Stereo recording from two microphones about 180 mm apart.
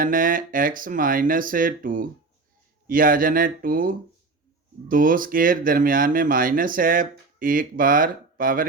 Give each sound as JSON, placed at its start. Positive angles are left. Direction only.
{"t": 0.0, "sound": "speech", "side_deg": -50}